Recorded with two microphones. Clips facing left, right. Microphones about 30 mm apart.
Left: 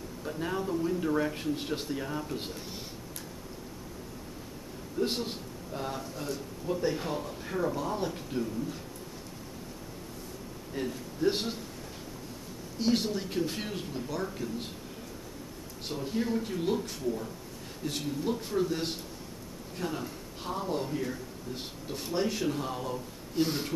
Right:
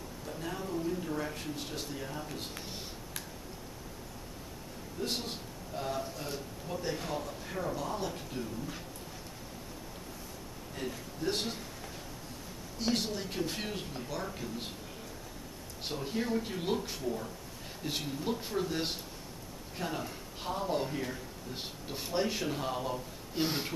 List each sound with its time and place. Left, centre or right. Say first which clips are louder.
0.2 s a sound: left 6 dB; left
1.5 s speech: left 6 dB; left
5.0 s speech: left 5 dB; centre
10.7 s a man's voice: left 5 dB; centre
12.7 s speech: left 4 dB; centre
15.9 s a man's voice: left 2 dB; centre